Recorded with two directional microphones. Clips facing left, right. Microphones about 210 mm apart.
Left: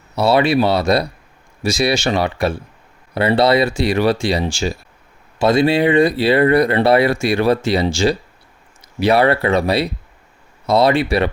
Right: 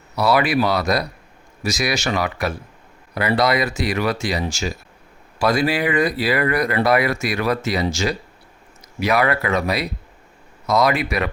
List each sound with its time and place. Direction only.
0.2 s speech: 25° left (ahead or behind)